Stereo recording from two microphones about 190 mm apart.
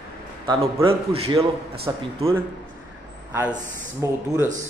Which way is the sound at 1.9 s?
20° right (ahead or behind).